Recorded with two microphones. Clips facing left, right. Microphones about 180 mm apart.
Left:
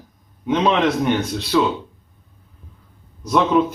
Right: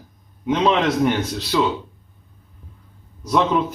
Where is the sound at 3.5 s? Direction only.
5° left (ahead or behind).